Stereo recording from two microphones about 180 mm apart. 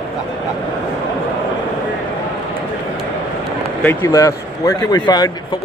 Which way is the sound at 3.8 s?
10° left (ahead or behind).